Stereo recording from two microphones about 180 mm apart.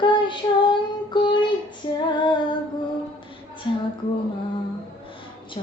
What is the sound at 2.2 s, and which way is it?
Female singing, 25° left (ahead or behind).